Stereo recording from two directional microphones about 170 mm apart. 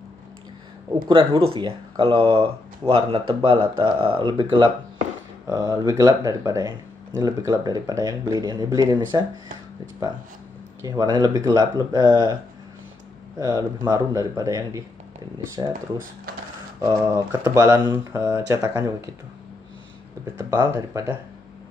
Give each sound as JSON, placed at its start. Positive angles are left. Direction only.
{"t": 1.0, "sound": "speech", "side_deg": -30}
{"t": 10.8, "sound": "speech", "side_deg": -20}
{"t": 13.4, "sound": "speech", "side_deg": -20}
{"t": 16.8, "sound": "speech", "side_deg": -20}
{"t": 20.3, "sound": "speech", "side_deg": -15}